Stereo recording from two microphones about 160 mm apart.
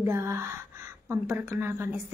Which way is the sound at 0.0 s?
15° right (ahead or behind).